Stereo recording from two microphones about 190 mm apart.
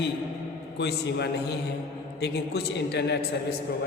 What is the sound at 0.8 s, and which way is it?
A woman's voice, 60° left (ahead or behind).